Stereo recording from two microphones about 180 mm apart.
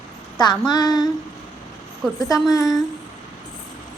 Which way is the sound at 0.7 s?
20° left (ahead or behind).